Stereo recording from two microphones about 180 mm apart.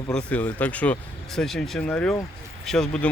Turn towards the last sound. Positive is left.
turn(degrees=5)  # may be behind; listen again after turning